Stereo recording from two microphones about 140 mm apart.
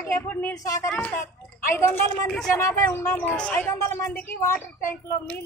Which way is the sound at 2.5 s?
20° left (ahead or behind).